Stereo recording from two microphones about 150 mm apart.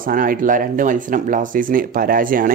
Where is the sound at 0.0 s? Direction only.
65° right (ahead or behind).